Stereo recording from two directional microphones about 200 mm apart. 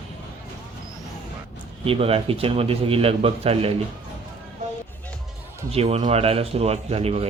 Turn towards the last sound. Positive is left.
turn(degrees=-30)  # may be behind; listen again after turning